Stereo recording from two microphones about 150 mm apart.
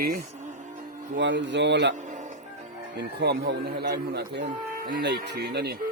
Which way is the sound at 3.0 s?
90° right.